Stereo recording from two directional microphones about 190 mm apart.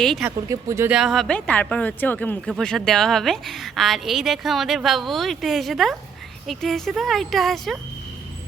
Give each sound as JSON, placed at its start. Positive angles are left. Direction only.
{"t": 0.0, "sound": "speech", "side_deg": 0}
{"t": 0.3, "sound": "speech", "side_deg": -15}
{"t": 0.9, "sound": "speech", "side_deg": 0}